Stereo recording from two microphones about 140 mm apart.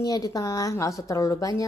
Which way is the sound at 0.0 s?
25° left (ahead or behind).